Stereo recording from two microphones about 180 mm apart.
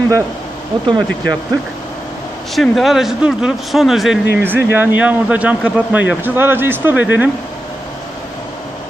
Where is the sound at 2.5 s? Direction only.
Centre (ahead or behind).